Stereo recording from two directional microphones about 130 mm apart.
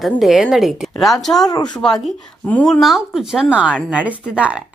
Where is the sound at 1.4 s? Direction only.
30° left (ahead or behind).